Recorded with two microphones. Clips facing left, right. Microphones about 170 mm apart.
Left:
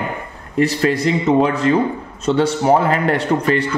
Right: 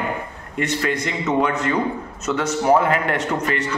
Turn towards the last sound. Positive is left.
turn(degrees=35)  # may be behind; listen again after turning